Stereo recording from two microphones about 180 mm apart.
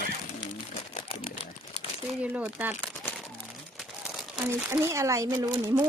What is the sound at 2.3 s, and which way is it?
Speech, 10° right (ahead or behind).